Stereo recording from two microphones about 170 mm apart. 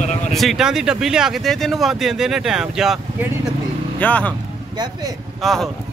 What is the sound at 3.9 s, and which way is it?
Speech, 10° left (ahead or behind).